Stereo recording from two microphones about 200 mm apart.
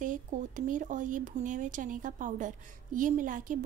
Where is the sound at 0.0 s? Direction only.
40° right (ahead or behind).